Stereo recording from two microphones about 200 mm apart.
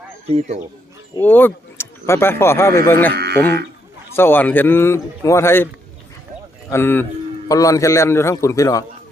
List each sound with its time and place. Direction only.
0.3 s speech: 35° right (ahead or behind)
1.1 s speech: 10° left (ahead or behind)
3.1 s sheep: 55° right (ahead or behind)
3.3 s a man's voice: 10° left (ahead or behind)
6.7 s a man's voice: 10° left (ahead or behind)